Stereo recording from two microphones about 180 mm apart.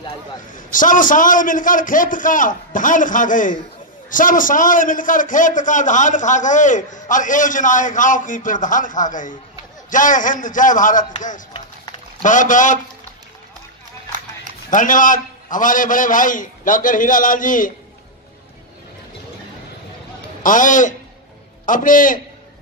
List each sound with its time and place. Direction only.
0.6 s a man's voice: 45° left (ahead or behind)
12.2 s a man's voice: 45° left (ahead or behind)
14.7 s a man's voice: 45° left (ahead or behind)
20.4 s a man's voice: 45° left (ahead or behind)